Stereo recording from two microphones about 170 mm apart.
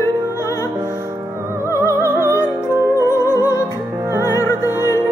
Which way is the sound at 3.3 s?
15° left (ahead or behind).